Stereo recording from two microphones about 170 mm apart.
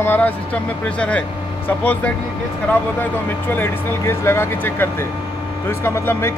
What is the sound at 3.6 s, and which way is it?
Speech, 15° left (ahead or behind).